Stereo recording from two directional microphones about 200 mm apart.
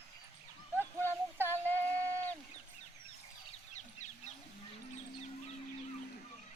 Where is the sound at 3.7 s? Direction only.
35° left (ahead or behind).